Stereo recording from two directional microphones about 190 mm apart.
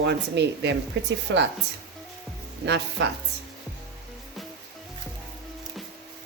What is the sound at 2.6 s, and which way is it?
Speech, 65° right (ahead or behind).